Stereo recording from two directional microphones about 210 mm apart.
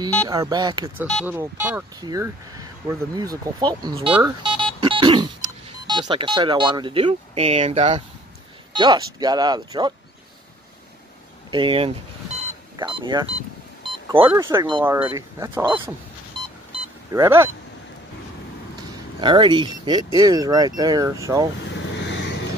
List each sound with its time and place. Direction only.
0.3 s speech: 20° right (ahead or behind)
1.0 s speech: 5° right (ahead or behind); by 4.1 s 20° right (ahead or behind)
4.2 s dog: 20° right (ahead or behind)
5.9 s speech: 20° right (ahead or behind)
11.5 s speech: 25° right (ahead or behind)
16.3 s beep: 20° right (ahead or behind)
17.1 s speech: 10° right (ahead or behind)
18.8 s speech: 20° right (ahead or behind)
21.6 s vehicle: 55° left (ahead or behind)